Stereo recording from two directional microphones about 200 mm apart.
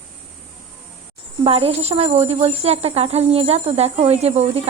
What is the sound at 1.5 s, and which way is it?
Speech, 30° right (ahead or behind).